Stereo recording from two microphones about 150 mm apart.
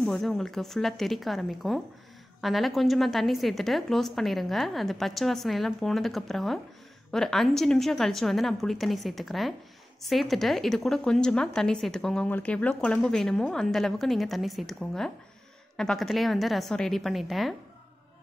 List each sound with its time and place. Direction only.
0.0 s a woman's voice: centre (ahead or behind)